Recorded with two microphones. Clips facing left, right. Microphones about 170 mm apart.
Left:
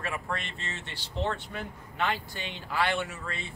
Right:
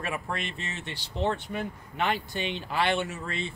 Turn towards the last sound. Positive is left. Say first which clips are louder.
# right 4 dB
turn(degrees=-25)  # may be behind; listen again after turning